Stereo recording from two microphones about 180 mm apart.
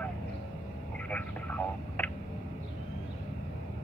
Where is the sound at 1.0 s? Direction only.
10° left (ahead or behind).